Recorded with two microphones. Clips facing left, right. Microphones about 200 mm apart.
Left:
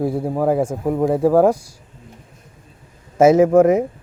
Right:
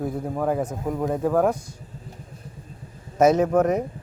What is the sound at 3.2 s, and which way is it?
Speech, 90° left.